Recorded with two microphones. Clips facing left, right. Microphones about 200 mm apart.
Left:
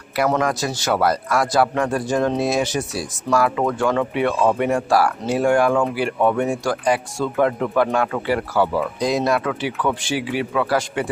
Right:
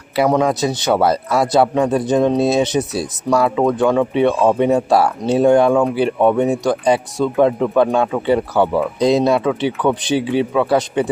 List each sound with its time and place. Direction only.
0.3 s speech: 15° right (ahead or behind)